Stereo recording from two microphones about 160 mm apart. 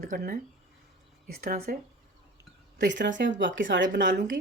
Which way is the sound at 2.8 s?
90° right.